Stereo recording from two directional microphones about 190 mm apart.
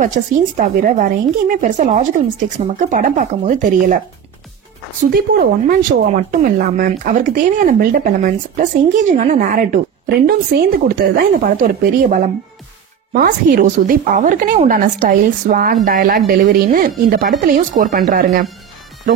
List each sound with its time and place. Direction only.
0.0 s speech: 40° right (ahead or behind)
5.1 s speech: 50° right (ahead or behind)